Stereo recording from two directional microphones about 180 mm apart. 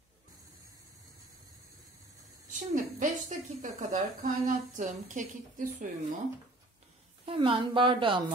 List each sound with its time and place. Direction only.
2.5 s a woman's voice: 45° right (ahead or behind)
7.2 s a woman's voice: 30° right (ahead or behind)